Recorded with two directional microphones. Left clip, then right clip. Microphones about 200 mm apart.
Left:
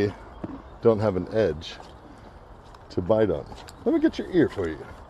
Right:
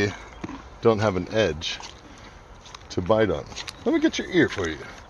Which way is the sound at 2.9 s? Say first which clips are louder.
Right 1 dB; 5° right (ahead or behind).